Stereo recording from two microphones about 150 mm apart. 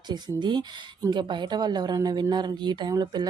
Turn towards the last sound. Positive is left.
turn(degrees=-30)  # may be behind; listen again after turning